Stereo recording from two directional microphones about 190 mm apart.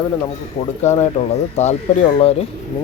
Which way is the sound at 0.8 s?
35° left (ahead or behind).